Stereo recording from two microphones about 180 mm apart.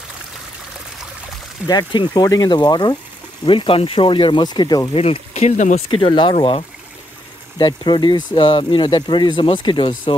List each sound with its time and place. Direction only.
1.7 s speech: 25° left (ahead or behind)
5.0 s speech: 35° left (ahead or behind)
5.9 s speech: 30° left (ahead or behind)